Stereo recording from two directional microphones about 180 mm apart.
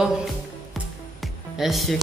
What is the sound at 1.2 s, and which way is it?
Music, centre (ahead or behind).